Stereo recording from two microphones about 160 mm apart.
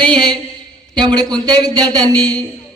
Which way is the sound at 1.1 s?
25° right (ahead or behind).